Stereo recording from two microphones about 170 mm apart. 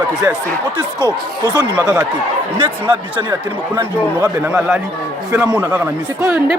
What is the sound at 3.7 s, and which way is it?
Speech, 15° right (ahead or behind).